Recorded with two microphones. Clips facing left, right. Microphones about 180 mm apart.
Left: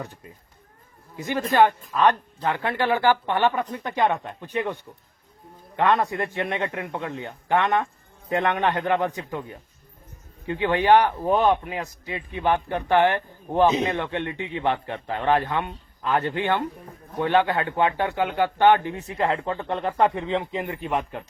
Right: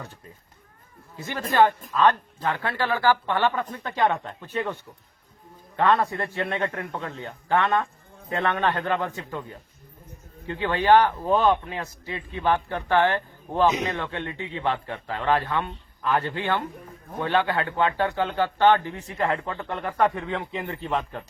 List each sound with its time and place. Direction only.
1.1 s speech: 15° left (ahead or behind)
13.7 s a man's voice: 25° left (ahead or behind)